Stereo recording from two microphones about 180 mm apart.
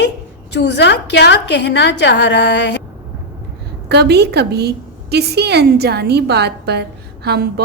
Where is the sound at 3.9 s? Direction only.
65° right (ahead or behind).